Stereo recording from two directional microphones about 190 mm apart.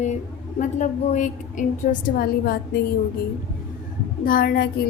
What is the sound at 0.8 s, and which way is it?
A woman's voice, 40° left (ahead or behind).